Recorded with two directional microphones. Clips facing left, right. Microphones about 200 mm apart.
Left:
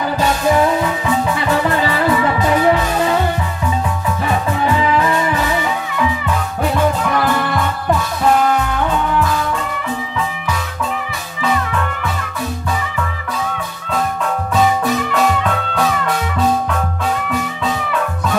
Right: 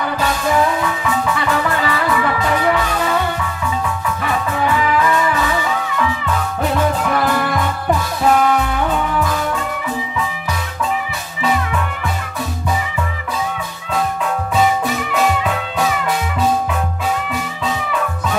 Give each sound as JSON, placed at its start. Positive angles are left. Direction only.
{"t": 0.8, "sound": "music", "side_deg": 25}
{"t": 4.7, "sound": "music", "side_deg": 30}
{"t": 7.0, "sound": "music", "side_deg": -5}
{"t": 14.5, "sound": "music", "side_deg": -5}